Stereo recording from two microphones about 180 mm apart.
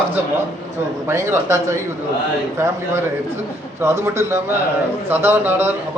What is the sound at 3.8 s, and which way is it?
A man's voice, 15° right (ahead or behind).